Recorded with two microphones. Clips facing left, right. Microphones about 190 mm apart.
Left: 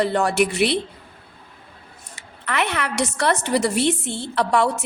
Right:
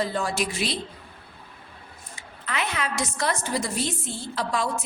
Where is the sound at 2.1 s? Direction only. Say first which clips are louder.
Left 6 dB; 65° left (ahead or behind).